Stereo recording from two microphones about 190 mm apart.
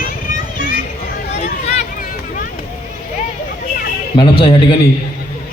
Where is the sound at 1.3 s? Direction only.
35° left (ahead or behind).